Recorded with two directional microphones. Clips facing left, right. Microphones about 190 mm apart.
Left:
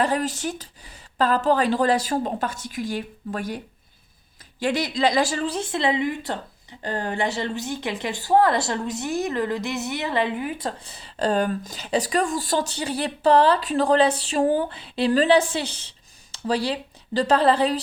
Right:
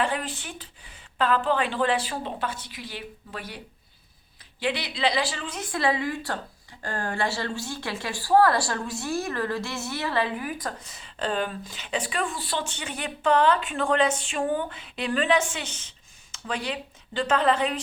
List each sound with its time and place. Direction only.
0.0 s a woman's voice: 40° left (ahead or behind)
4.6 s a woman's voice: 45° left (ahead or behind)